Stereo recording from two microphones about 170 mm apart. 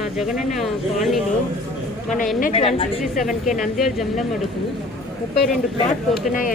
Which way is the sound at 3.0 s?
Centre (ahead or behind).